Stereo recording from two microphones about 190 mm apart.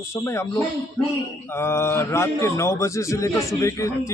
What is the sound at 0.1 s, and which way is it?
A man's voice, 15° left (ahead or behind).